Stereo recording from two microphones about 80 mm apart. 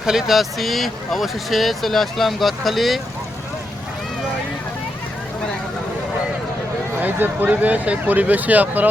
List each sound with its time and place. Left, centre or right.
0.0 s speech: centre
7.0 s speech: right